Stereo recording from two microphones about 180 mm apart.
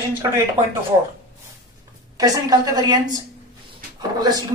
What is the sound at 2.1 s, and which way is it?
Speech, 20° right (ahead or behind).